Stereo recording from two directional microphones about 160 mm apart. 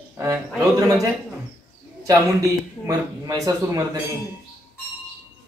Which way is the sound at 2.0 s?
20° right (ahead or behind).